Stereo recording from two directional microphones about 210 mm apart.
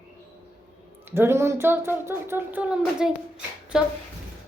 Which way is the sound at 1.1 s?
10° right (ahead or behind).